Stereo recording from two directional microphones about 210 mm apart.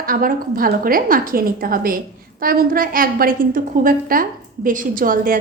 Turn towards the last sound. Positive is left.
turn(degrees=-40)  # may be behind; listen again after turning